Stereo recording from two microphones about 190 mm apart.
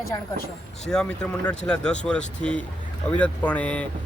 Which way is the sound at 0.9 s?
5° left (ahead or behind).